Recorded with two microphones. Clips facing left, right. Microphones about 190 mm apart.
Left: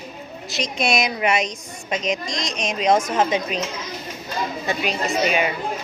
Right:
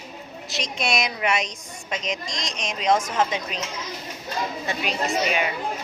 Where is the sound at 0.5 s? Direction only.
5° left (ahead or behind).